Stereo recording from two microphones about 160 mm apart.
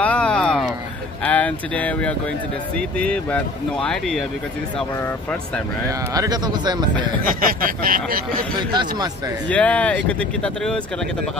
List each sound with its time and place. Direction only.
0.0 s a sound: 10° left (ahead or behind)
1.2 s speech: 10° left (ahead or behind)
6.1 s speech: 25° right (ahead or behind)
7.2 s speech: 65° right (ahead or behind)
9.5 s speech: 10° left (ahead or behind)